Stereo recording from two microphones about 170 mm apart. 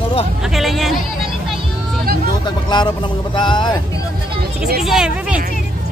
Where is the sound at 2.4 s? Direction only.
25° left (ahead or behind).